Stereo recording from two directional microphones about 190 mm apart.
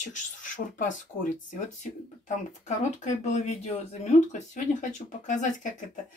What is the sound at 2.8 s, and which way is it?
Speech, 35° left (ahead or behind).